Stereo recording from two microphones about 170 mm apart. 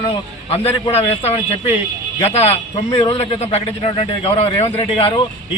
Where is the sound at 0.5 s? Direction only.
35° left (ahead or behind).